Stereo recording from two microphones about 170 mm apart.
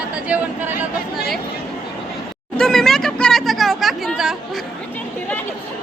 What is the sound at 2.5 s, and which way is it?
Speech, 5° left (ahead or behind).